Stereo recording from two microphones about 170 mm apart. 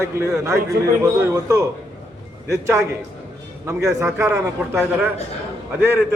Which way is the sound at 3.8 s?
15° right (ahead or behind).